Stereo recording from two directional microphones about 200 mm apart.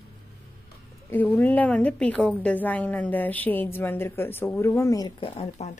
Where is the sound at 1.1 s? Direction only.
10° left (ahead or behind).